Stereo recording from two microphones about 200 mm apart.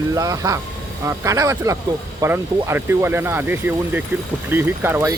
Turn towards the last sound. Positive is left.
turn(degrees=-10)  # may be behind; listen again after turning